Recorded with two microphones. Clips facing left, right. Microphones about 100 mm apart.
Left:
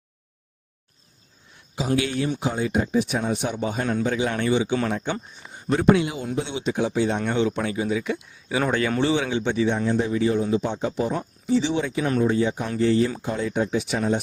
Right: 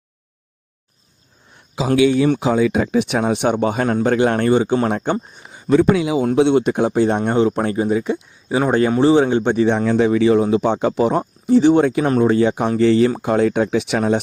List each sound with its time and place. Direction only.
1.7 s speech: 90° right; by 4.9 s 45° right (ahead or behind)
4.9 s speech: 55° right (ahead or behind)
5.7 s speech: 90° right
6.2 s speech: 60° right (ahead or behind)
7.3 s speech: 40° right (ahead or behind)
8.0 s speech: 30° right (ahead or behind); by 9.7 s 50° right (ahead or behind)
9.7 s speech: 75° right (ahead or behind)